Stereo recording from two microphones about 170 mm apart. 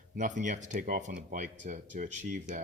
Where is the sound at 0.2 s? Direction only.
45° right (ahead or behind).